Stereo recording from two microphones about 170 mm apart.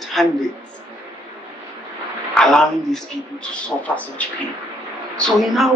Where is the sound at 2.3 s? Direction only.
5° left (ahead or behind).